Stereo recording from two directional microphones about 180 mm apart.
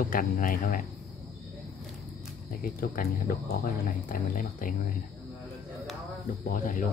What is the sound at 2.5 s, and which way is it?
Speech, 55° left (ahead or behind).